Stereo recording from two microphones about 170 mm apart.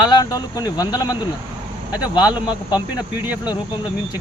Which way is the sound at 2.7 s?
25° left (ahead or behind).